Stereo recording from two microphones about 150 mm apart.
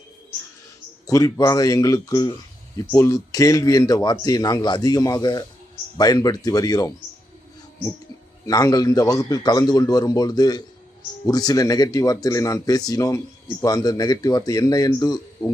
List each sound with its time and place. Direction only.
1.0 s a man's voice: 25° left (ahead or behind)
8.4 s a man's voice: 25° left (ahead or behind)